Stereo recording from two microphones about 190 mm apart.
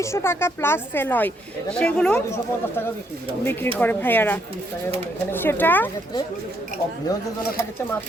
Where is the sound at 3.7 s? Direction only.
10° left (ahead or behind).